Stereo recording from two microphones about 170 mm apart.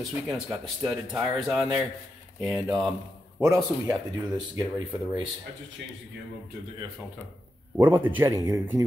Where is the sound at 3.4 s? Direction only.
15° right (ahead or behind).